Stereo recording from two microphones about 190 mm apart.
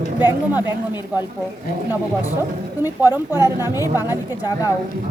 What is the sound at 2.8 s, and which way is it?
Speech, 10° right (ahead or behind).